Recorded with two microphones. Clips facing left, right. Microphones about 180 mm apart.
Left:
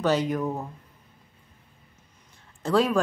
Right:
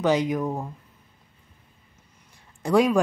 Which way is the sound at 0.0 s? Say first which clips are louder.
Right 2 dB; 15° right (ahead or behind).